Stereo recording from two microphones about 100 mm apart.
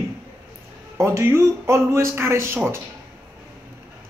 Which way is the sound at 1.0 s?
25° right (ahead or behind).